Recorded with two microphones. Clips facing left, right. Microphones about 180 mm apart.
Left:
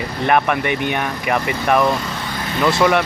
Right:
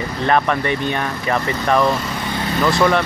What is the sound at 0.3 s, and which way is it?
Speech, 15° left (ahead or behind).